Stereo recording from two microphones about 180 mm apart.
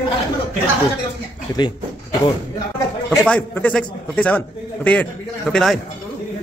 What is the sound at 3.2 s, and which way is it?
A man's voice, 10° left (ahead or behind).